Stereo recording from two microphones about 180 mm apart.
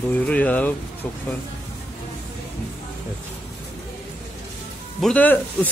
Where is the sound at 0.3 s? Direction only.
10° left (ahead or behind).